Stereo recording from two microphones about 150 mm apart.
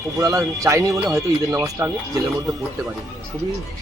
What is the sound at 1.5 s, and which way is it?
Speech, 15° right (ahead or behind).